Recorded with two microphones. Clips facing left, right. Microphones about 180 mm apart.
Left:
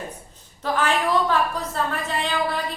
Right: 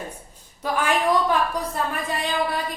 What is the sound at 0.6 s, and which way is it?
Speech, 10° right (ahead or behind).